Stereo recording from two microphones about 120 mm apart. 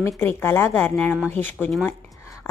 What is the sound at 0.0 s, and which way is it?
Speech, 20° left (ahead or behind).